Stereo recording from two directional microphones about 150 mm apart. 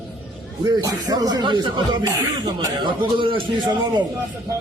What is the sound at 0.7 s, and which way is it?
A man's voice, 25° right (ahead or behind).